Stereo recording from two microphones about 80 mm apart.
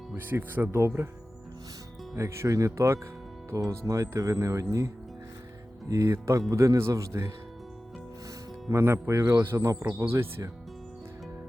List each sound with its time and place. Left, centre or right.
0.2 s speech: right
2.1 s speech: right
5.9 s speech: right
8.7 s speech: right
10.1 s speech: right